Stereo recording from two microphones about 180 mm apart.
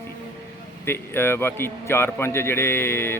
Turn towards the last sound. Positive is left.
turn(degrees=15)  # may be behind; listen again after turning